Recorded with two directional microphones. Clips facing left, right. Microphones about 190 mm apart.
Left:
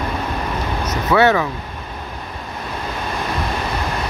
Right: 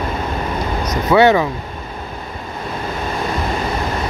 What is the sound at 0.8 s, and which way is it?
Speech, 15° right (ahead or behind).